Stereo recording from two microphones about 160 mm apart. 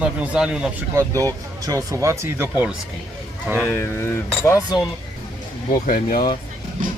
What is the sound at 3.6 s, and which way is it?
Speech, 15° left (ahead or behind).